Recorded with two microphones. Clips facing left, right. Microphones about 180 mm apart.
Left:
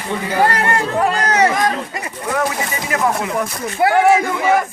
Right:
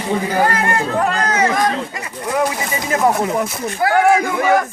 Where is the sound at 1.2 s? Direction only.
40° left (ahead or behind).